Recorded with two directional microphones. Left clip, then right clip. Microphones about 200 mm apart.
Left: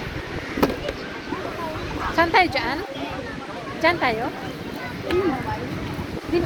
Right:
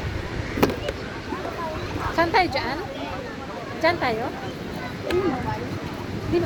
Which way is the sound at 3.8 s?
15° left (ahead or behind).